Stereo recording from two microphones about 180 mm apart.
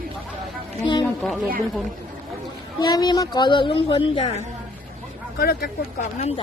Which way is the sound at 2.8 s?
25° left (ahead or behind).